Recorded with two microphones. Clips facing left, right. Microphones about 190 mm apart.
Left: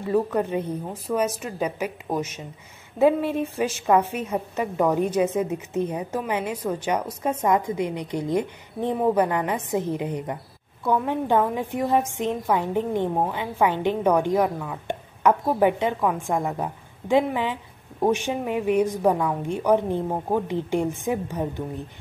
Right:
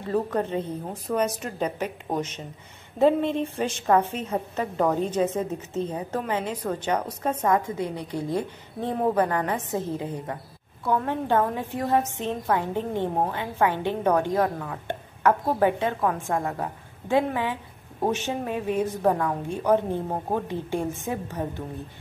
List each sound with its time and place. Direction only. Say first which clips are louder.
0.1 s a woman's voice: left 3 dB; 10° left (ahead or behind)